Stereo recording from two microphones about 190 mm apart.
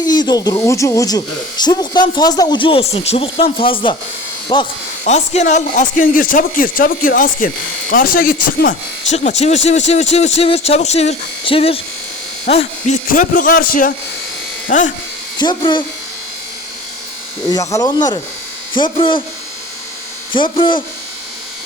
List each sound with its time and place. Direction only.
0.0 s speech: 20° left (ahead or behind)
5.0 s speech: 35° left (ahead or behind)
9.1 s speech: 35° left (ahead or behind)
15.4 s speech: 25° left (ahead or behind)
17.5 s speech: 15° left (ahead or behind)
20.3 s speech: 25° left (ahead or behind)